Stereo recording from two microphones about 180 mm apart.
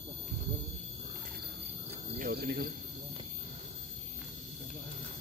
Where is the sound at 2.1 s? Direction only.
60° right (ahead or behind).